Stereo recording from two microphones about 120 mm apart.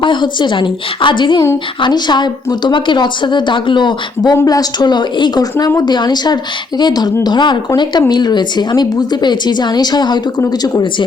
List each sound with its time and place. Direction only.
0.0 s a woman's voice: 40° left (ahead or behind)